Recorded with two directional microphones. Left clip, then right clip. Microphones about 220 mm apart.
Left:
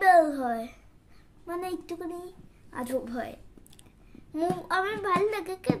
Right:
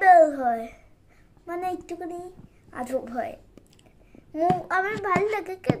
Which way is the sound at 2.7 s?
20° left (ahead or behind).